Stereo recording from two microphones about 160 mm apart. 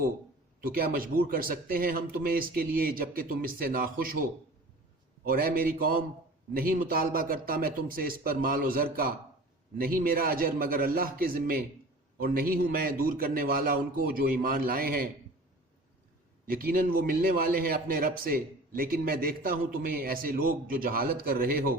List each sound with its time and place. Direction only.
0.6 s a man's voice: 65° right (ahead or behind)
16.5 s a man's voice: 65° right (ahead or behind)